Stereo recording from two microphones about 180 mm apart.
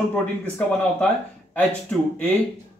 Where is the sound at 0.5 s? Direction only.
5° left (ahead or behind).